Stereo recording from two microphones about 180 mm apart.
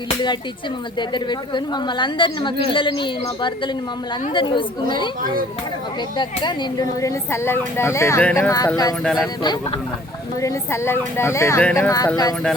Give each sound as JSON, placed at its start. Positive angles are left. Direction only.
{"t": 0.9, "sound": "a woman's voice", "side_deg": 25}
{"t": 6.1, "sound": "speech", "side_deg": 25}
{"t": 10.4, "sound": "speech", "side_deg": 15}